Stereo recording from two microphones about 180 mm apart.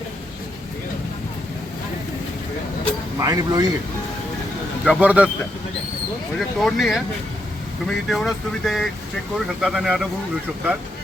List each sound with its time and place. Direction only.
3.2 s speech: 20° right (ahead or behind)
4.9 s speech: 5° right (ahead or behind)
6.6 s speech: centre (ahead or behind)